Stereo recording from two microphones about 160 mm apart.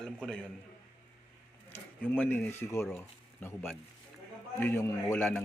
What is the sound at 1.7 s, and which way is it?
Speech, 10° left (ahead or behind).